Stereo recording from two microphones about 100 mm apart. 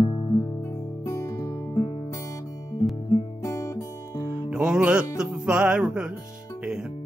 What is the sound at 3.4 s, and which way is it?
Music, 35° left (ahead or behind).